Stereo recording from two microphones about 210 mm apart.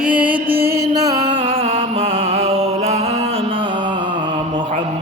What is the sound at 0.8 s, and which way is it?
Music, 15° right (ahead or behind).